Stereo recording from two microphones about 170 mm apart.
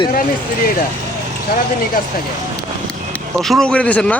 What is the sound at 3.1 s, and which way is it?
Speech, centre (ahead or behind).